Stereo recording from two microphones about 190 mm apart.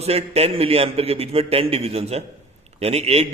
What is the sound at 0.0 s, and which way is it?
A man's voice, 35° right (ahead or behind).